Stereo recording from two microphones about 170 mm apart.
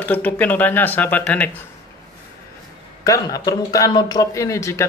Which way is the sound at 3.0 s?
20° left (ahead or behind).